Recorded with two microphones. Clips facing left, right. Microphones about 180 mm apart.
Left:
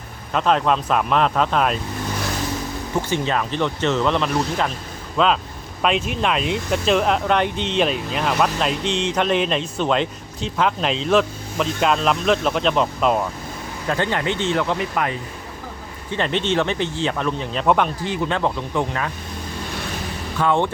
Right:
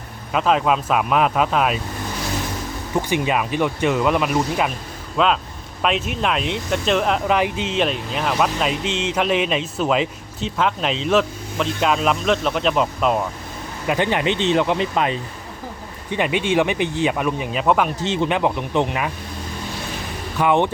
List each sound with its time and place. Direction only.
0.3 s speech: 5° right (ahead or behind)
3.1 s speech: 10° right (ahead or behind)
13.8 s speech: 15° right (ahead or behind)
16.1 s speech: 10° right (ahead or behind)
18.0 s speech: 25° right (ahead or behind)
20.4 s speech: 15° right (ahead or behind)